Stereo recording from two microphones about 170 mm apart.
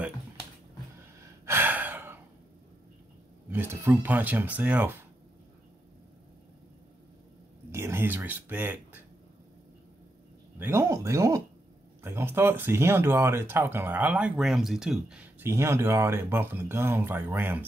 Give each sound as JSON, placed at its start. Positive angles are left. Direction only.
{"t": 1.4, "sound": "gasp", "side_deg": -15}
{"t": 3.4, "sound": "speech", "side_deg": -10}
{"t": 7.7, "sound": "speech", "side_deg": -15}
{"t": 10.6, "sound": "speech", "side_deg": -15}
{"t": 15.4, "sound": "speech", "side_deg": -15}